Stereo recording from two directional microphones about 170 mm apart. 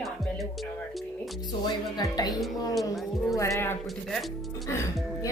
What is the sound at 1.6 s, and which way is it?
A woman's voice, 20° left (ahead or behind).